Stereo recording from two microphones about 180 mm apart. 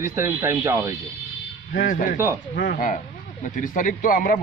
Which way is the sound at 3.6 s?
45° left (ahead or behind).